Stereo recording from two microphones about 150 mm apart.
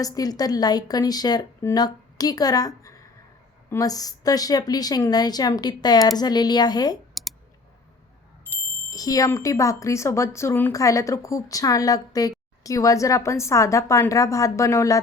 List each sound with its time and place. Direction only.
0.0 s speech: 25° left (ahead or behind)
7.1 s clicking: centre (ahead or behind)
8.9 s speech: 25° left (ahead or behind)